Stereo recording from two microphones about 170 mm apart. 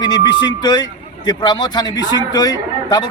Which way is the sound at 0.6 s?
25° left (ahead or behind).